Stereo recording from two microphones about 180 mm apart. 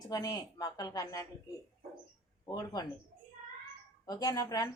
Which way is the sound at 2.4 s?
20° left (ahead or behind).